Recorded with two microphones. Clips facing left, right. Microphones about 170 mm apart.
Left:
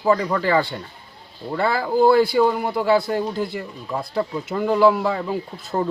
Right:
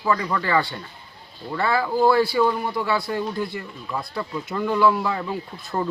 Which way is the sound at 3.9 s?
30° left (ahead or behind).